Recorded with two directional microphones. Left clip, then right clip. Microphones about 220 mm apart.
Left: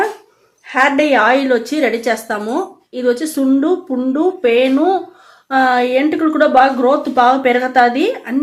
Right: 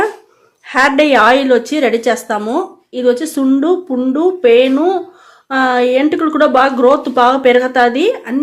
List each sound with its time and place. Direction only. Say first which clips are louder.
0.7 s a woman's voice: right 2 dB; 30° right (ahead or behind)